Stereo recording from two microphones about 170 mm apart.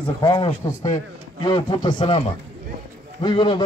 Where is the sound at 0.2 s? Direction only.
25° left (ahead or behind).